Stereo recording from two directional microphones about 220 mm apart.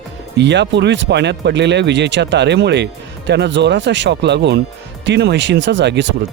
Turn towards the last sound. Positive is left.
turn(degrees=-50)  # may be behind; listen again after turning